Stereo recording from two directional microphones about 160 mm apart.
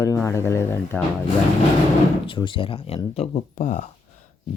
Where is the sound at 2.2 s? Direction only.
30° left (ahead or behind).